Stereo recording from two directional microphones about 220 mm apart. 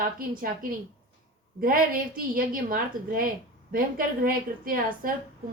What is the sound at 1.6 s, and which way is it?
A woman's voice, 40° right (ahead or behind).